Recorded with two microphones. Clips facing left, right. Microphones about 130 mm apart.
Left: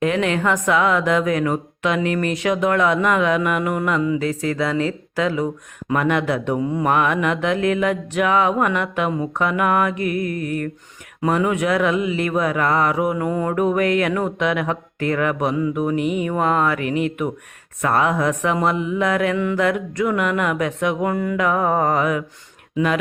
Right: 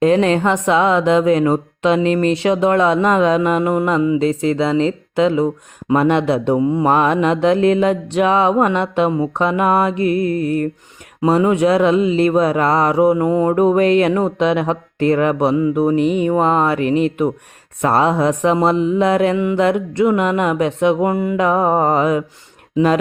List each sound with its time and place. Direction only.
0.0 s mantra: 35° right (ahead or behind)